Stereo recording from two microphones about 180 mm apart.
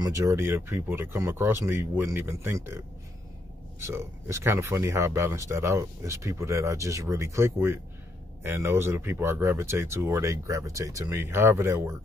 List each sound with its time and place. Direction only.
0.0 s speech: 15° right (ahead or behind)
3.8 s speech: 15° right (ahead or behind)